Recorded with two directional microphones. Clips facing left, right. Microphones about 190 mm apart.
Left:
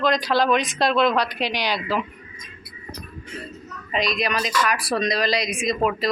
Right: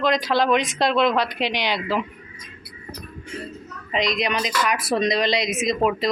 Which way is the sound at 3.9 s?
20° right (ahead or behind).